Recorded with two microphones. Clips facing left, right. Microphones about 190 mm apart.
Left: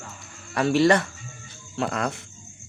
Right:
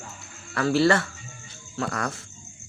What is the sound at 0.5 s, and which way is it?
Speech, 20° left (ahead or behind).